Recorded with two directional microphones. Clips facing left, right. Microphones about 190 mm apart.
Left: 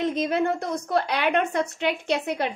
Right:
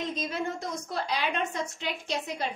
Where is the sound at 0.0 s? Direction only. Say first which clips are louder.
Left 8 dB; 60° left (ahead or behind).